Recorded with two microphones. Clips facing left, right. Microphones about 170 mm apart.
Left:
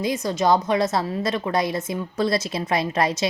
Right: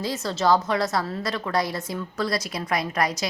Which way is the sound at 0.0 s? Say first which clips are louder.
Left 3 dB; 15° left (ahead or behind).